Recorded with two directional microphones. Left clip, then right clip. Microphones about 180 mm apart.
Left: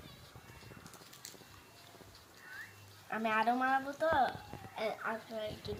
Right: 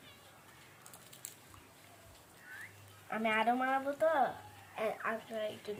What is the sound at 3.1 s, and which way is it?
A woman's voice, 10° right (ahead or behind).